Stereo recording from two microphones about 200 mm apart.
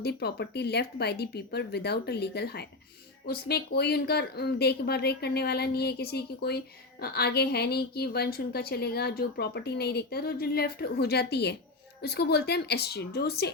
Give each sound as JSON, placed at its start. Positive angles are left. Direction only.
{"t": 0.0, "sound": "a woman's voice", "side_deg": 55}